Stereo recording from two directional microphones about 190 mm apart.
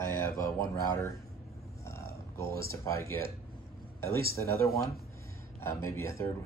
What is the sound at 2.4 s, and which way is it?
Speech, 50° right (ahead or behind).